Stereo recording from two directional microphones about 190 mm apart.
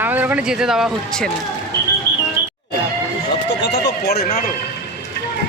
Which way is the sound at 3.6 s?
60° left (ahead or behind).